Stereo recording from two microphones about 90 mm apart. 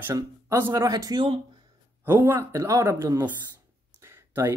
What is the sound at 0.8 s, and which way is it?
Speech, 45° right (ahead or behind).